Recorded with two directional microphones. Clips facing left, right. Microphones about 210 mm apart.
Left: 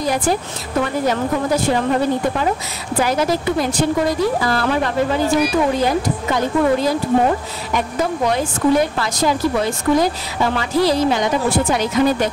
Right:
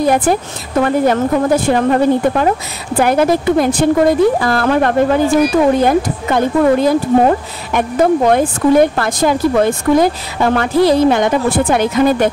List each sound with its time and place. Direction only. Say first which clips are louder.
0.0 s a woman's voice: right 6 dB; 55° right (ahead or behind)
8.9 s a woman's voice: right 4 dB; 55° right (ahead or behind)